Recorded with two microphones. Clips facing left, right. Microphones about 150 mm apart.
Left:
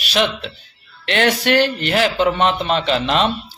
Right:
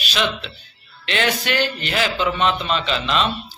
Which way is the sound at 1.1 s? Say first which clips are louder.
Left 5 dB; 60° left (ahead or behind).